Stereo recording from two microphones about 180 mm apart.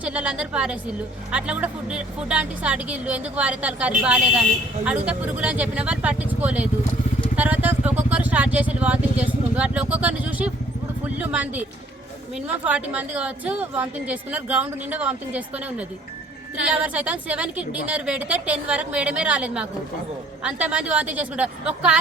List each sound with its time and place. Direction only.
0.0 s a woman's voice: 5° right (ahead or behind)
16.6 s a woman's voice: 5° right (ahead or behind)